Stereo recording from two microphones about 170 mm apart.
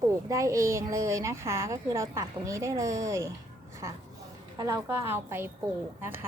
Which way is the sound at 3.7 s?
20° right (ahead or behind).